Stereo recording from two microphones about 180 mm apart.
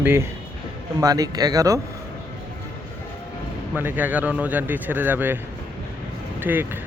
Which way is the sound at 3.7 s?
10° right (ahead or behind).